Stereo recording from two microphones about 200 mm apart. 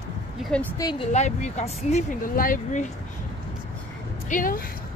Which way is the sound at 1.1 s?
35° left (ahead or behind).